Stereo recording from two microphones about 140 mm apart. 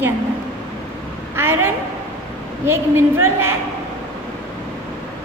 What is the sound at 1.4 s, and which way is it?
A woman's voice, 15° right (ahead or behind).